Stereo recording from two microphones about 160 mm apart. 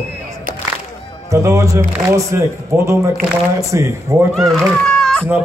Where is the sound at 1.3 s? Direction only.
20° right (ahead or behind).